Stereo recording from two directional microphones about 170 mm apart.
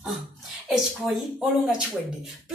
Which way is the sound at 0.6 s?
5° right (ahead or behind).